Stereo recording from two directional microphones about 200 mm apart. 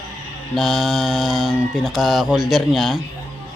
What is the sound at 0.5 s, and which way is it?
Speech, centre (ahead or behind).